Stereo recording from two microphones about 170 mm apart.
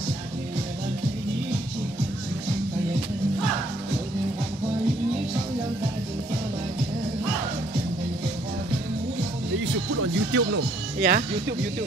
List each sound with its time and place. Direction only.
10.3 s speech: 80° right; by 11.2 s 60° right (ahead or behind)